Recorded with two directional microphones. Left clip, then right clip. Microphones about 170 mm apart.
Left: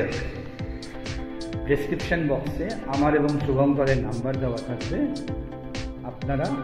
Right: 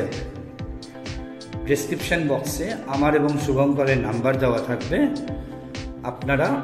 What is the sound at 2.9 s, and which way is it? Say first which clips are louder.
Speech: right 2 dB; centre (ahead or behind).